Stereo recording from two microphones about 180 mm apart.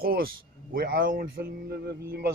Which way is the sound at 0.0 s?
55° right (ahead or behind).